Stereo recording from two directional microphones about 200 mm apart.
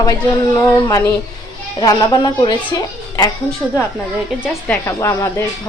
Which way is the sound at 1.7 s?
20° left (ahead or behind).